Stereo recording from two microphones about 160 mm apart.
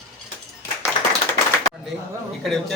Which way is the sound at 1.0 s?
30° left (ahead or behind).